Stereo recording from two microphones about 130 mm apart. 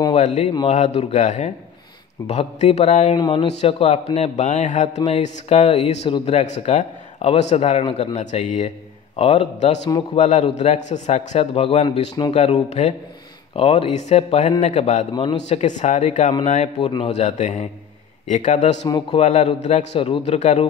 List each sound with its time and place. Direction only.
0.1 s a man's voice: 65° left (ahead or behind)
3.2 s speech: 40° left (ahead or behind)
6.3 s a man's voice: 60° left (ahead or behind); by 12.4 s 45° left (ahead or behind)
12.6 s a man's voice: 60° left (ahead or behind)
13.6 s a man's voice: 45° left (ahead or behind); by 20.0 s 65° left (ahead or behind)
20.0 s speech: 50° left (ahead or behind)